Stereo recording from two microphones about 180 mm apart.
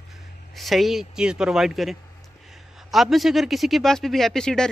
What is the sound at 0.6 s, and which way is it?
A man's voice, centre (ahead or behind).